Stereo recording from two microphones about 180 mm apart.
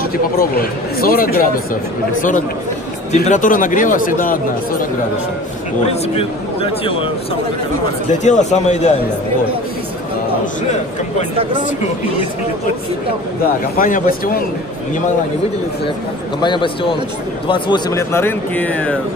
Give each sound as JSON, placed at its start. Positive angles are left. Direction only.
{"t": 0.4, "sound": "a man's voice", "side_deg": 55}
{"t": 3.1, "sound": "speech", "side_deg": 45}
{"t": 5.9, "sound": "speech", "side_deg": 35}
{"t": 8.1, "sound": "speech", "side_deg": 40}
{"t": 13.7, "sound": "speech", "side_deg": 50}
{"t": 16.3, "sound": "a man's voice", "side_deg": 25}